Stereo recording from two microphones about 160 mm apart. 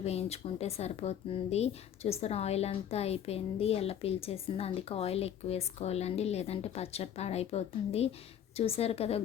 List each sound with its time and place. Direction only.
0.0 s speech: 40° left (ahead or behind)